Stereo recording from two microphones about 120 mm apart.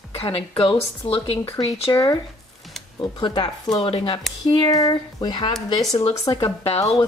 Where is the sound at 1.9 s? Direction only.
35° left (ahead or behind).